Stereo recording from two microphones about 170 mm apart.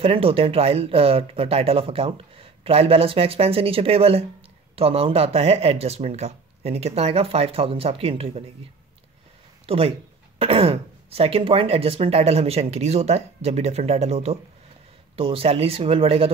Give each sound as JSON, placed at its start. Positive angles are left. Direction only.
{"t": 0.0, "sound": "speech", "side_deg": -35}
{"t": 9.7, "sound": "speech", "side_deg": -35}